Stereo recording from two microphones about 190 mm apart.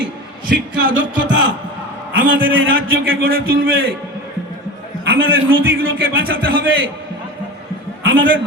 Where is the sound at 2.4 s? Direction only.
90° right.